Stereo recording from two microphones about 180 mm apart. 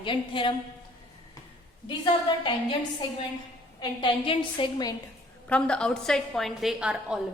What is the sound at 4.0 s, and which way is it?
Speech, 25° left (ahead or behind).